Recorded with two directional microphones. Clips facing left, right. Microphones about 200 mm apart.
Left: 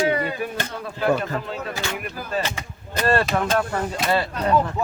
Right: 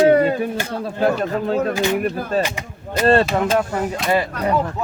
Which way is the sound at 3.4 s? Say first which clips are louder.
Right 3 dB; centre (ahead or behind).